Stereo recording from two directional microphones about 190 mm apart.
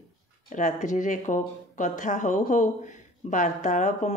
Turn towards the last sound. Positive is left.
turn(degrees=40)  # may be behind; listen again after turning